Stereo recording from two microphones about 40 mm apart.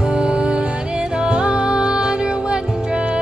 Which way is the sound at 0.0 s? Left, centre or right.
Right.